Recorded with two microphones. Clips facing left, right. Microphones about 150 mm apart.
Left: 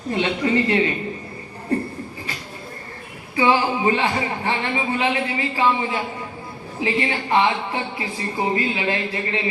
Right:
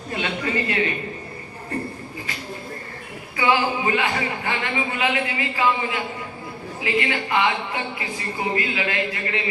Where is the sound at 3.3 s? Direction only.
30° left (ahead or behind).